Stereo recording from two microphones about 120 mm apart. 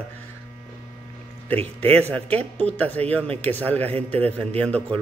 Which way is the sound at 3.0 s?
55° right (ahead or behind).